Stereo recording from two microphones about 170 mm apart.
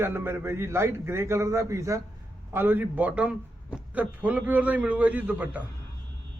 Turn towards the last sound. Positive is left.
turn(degrees=-10)  # may be behind; listen again after turning